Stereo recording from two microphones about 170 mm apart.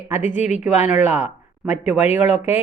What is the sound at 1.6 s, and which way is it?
Speech, 10° right (ahead or behind).